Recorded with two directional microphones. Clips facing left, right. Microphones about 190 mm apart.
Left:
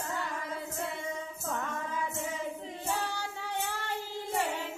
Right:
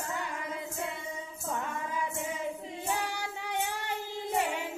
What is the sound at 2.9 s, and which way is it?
Child singing, 15° right (ahead or behind).